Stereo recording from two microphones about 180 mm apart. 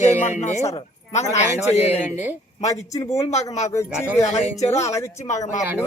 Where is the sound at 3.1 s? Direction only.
40° left (ahead or behind).